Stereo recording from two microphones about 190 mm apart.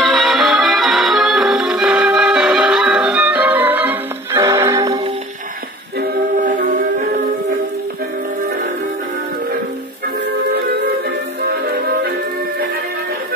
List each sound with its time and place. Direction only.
0.0 s music: centre (ahead or behind); by 5.1 s 20° right (ahead or behind)
5.9 s music: 45° right (ahead or behind)
10.5 s music: 60° right (ahead or behind)